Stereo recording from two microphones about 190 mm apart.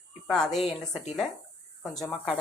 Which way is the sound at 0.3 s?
Centre (ahead or behind).